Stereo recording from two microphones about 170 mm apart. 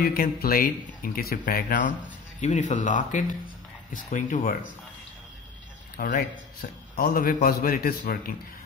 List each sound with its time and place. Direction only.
0.0 s speech: 60° left (ahead or behind)
5.9 s a man's voice: 55° left (ahead or behind)